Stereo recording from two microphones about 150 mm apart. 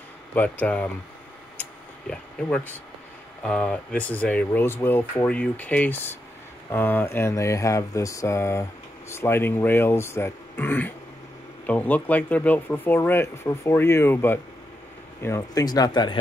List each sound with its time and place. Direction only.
0.3 s speech: 10° left (ahead or behind)
1.6 s a sound: 5° left (ahead or behind)
3.4 s speech: 5° left (ahead or behind); by 16.2 s 30° left (ahead or behind)